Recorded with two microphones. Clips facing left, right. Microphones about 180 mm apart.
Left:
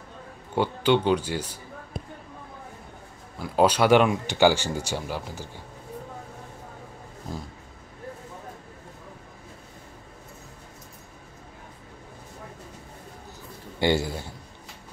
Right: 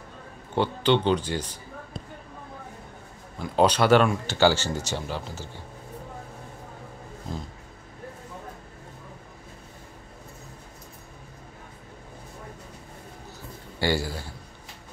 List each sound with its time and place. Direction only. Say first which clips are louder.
0.6 s speech: even; 10° left (ahead or behind)
3.3 s speech: even; 5° left (ahead or behind)
13.7 s a man's voice: left 3 dB; 20° left (ahead or behind)